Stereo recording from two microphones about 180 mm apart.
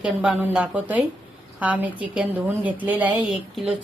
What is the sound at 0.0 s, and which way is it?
A woman's voice, 5° right (ahead or behind).